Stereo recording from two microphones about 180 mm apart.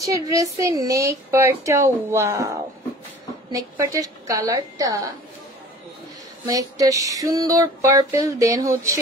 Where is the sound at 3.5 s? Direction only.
15° right (ahead or behind).